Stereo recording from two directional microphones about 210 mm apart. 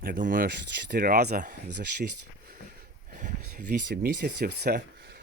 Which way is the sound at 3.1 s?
40° right (ahead or behind).